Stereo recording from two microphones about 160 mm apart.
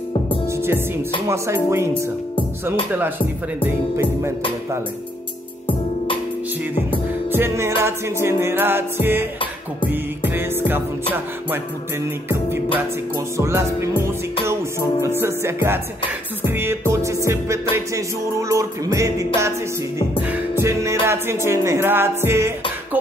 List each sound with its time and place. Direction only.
0.5 s music: 15° right (ahead or behind)
3.6 s music: 15° right (ahead or behind)
7.2 s music: 15° right (ahead or behind)
13.4 s music: 15° right (ahead or behind)